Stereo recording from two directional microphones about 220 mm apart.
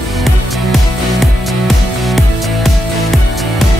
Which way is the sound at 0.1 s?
Centre (ahead or behind).